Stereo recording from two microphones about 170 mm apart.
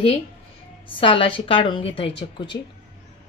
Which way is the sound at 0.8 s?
30° left (ahead or behind).